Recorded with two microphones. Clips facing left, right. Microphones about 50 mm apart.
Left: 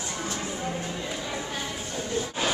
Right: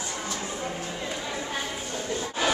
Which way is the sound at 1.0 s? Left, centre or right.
Centre.